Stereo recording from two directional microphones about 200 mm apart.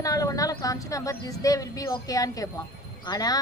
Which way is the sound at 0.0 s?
15° left (ahead or behind).